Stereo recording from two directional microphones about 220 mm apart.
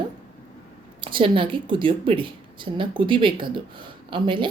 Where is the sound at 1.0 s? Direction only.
20° right (ahead or behind).